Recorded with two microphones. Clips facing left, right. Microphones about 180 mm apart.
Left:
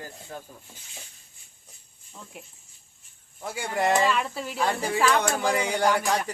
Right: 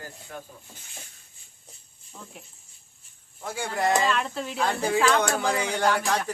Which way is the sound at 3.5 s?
15° left (ahead or behind).